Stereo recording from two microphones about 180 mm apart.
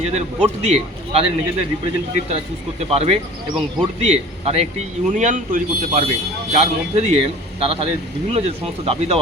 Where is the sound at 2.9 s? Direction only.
35° right (ahead or behind).